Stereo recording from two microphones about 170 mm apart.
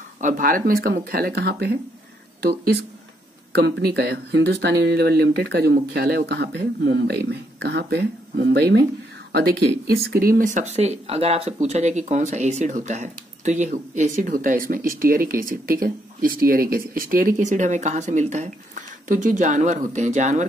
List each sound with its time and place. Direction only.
0.2 s speech: 55° right (ahead or behind); by 1.8 s 70° right (ahead or behind)
3.5 s speech: 75° right (ahead or behind)
9.8 s speech: 65° right (ahead or behind); by 20.4 s 45° right (ahead or behind)